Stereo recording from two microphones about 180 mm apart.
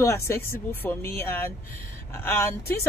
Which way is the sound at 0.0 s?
15° left (ahead or behind).